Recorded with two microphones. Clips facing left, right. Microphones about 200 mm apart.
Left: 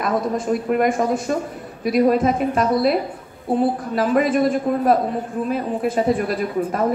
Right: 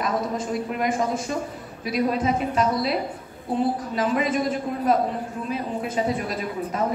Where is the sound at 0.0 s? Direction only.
50° left (ahead or behind).